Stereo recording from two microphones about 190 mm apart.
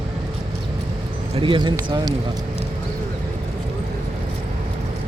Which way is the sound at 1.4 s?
25° right (ahead or behind).